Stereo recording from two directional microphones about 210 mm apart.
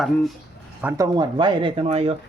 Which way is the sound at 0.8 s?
15° right (ahead or behind).